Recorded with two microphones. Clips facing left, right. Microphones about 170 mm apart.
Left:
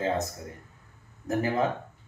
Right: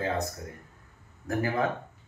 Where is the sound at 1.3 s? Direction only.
20° left (ahead or behind).